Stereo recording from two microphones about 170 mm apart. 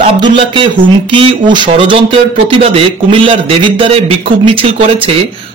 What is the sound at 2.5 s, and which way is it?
Speech, 30° right (ahead or behind).